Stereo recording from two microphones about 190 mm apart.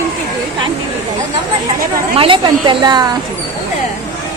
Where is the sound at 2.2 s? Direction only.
25° right (ahead or behind).